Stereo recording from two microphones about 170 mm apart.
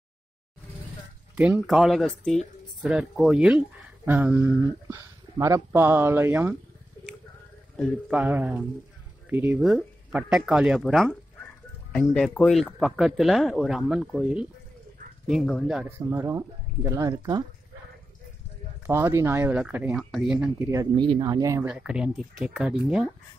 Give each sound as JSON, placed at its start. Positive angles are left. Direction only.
{"t": 1.3, "sound": "speech", "side_deg": -5}
{"t": 8.1, "sound": "speech", "side_deg": -10}
{"t": 18.9, "sound": "speech", "side_deg": -15}
{"t": 20.7, "sound": "speech", "side_deg": -25}
{"t": 21.6, "sound": "speech", "side_deg": -5}